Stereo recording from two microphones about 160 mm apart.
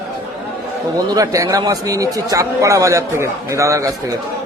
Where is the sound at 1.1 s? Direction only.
20° right (ahead or behind).